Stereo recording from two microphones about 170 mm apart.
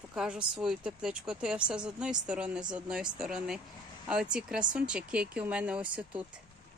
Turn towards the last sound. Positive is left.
turn(degrees=-5)  # may be behind; listen again after turning